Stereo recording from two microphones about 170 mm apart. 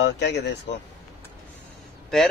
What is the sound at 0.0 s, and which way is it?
Speech, 85° left.